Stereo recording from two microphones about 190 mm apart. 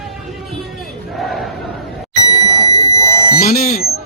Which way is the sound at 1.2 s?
Centre (ahead or behind).